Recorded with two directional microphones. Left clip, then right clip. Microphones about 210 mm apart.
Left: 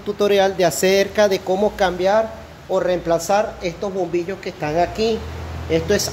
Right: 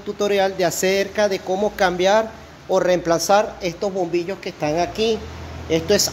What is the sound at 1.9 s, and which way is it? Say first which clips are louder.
Speech: even; 40° right (ahead or behind).